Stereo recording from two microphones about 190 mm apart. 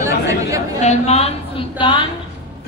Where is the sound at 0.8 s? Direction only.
35° left (ahead or behind).